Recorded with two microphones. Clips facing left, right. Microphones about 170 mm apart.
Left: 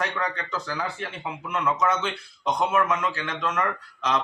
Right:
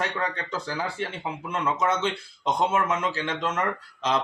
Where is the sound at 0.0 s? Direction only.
30° right (ahead or behind).